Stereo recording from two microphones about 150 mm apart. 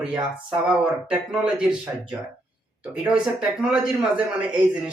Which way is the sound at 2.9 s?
5° right (ahead or behind).